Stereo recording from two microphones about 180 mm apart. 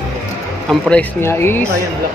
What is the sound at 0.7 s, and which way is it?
Speech, 5° left (ahead or behind).